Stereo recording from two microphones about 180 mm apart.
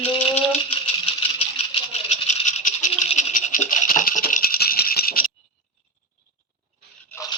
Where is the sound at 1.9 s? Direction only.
40° left (ahead or behind); by 5.2 s 55° left (ahead or behind).